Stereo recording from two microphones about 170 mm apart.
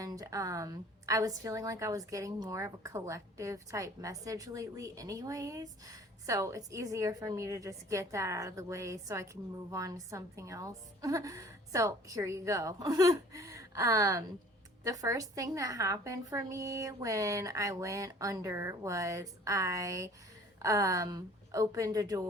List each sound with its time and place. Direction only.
0.0 s a woman's voice: 20° right (ahead or behind)